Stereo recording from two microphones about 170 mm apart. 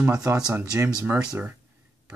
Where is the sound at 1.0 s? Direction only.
10° right (ahead or behind).